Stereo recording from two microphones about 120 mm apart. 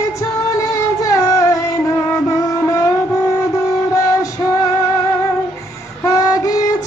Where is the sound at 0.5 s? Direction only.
30° left (ahead or behind).